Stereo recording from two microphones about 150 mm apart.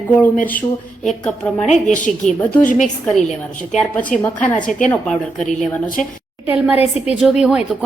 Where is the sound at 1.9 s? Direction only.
55° left (ahead or behind).